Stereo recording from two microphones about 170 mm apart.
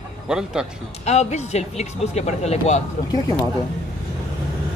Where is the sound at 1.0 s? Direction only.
40° left (ahead or behind).